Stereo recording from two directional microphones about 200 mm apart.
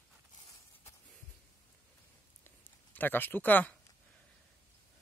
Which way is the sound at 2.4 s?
10° left (ahead or behind).